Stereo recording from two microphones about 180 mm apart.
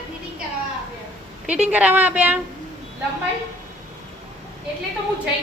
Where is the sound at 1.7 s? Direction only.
10° right (ahead or behind).